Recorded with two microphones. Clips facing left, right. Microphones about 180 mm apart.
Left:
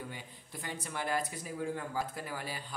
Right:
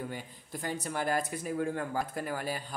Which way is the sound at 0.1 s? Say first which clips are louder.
Right 6 dB; 45° right (ahead or behind).